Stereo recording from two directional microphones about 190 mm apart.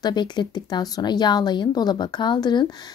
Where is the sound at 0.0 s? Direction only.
25° left (ahead or behind).